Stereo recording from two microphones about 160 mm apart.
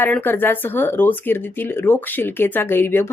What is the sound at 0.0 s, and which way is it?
A woman's voice, 10° left (ahead or behind).